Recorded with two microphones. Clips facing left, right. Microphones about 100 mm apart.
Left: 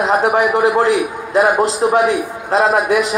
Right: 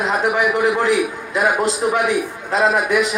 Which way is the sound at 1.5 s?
Centre (ahead or behind).